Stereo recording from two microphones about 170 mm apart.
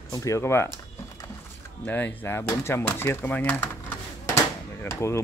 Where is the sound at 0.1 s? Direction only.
20° left (ahead or behind).